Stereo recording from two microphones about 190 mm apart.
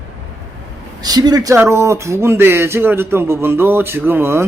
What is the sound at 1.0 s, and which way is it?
Speech, 20° right (ahead or behind).